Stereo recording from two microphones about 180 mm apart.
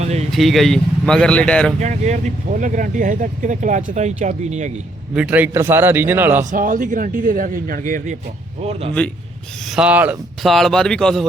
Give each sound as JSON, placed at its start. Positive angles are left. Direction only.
{"t": 0.0, "sound": "speech", "side_deg": -40}
{"t": 0.3, "sound": "speech", "side_deg": 0}
{"t": 1.8, "sound": "speech", "side_deg": -40}
{"t": 5.1, "sound": "a man's voice", "side_deg": -10}
{"t": 6.4, "sound": "speech", "side_deg": -45}
{"t": 9.6, "sound": "speech", "side_deg": -5}
{"t": 10.5, "sound": "speech", "side_deg": 0}